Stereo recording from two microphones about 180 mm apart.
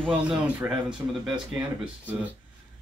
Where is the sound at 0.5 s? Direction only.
5° right (ahead or behind).